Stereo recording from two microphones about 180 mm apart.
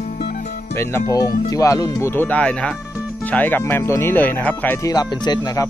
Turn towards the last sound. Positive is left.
turn(degrees=20)  # may be behind; listen again after turning